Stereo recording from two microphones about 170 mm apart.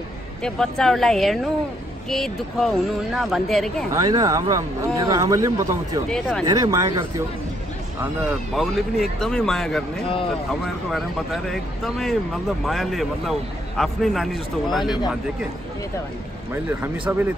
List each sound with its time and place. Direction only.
0.4 s speech: centre (ahead or behind)
3.9 s speech: 20° right (ahead or behind)
6.0 s speech: 5° left (ahead or behind)
6.4 s speech: 20° right (ahead or behind)
8.0 s speech: 5° right (ahead or behind)
10.9 s speech: centre (ahead or behind)
16.5 s speech: 10° right (ahead or behind)